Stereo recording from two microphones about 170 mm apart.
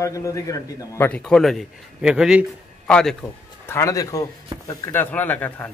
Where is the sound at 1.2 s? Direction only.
Centre (ahead or behind).